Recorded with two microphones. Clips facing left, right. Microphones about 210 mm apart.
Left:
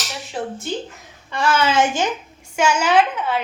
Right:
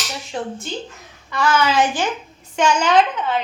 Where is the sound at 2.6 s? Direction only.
10° left (ahead or behind).